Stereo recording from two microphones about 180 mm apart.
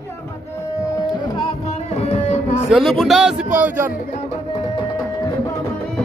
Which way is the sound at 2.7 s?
Centre (ahead or behind).